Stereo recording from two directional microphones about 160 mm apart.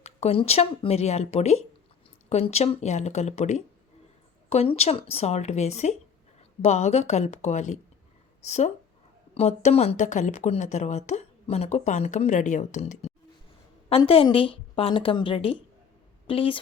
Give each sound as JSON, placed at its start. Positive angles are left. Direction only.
{"t": 0.0, "sound": "a woman's voice", "side_deg": 40}